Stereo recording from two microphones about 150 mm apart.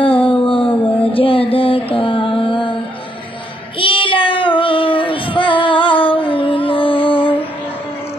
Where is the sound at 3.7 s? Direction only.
35° left (ahead or behind).